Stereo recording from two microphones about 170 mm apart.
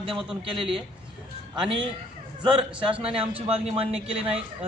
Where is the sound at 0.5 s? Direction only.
30° right (ahead or behind).